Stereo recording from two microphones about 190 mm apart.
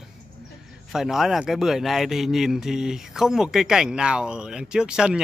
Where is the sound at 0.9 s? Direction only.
Centre (ahead or behind).